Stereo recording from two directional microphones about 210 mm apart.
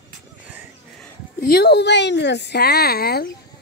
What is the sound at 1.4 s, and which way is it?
Speech, 50° left (ahead or behind).